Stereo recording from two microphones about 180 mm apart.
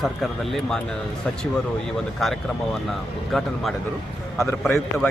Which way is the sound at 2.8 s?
Centre (ahead or behind).